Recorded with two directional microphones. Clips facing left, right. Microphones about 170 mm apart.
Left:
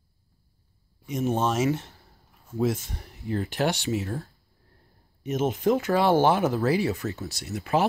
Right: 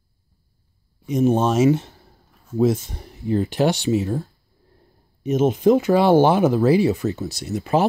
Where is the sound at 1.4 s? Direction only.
25° right (ahead or behind).